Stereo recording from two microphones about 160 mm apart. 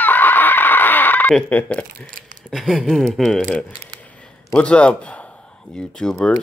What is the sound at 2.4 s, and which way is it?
Speech, centre (ahead or behind).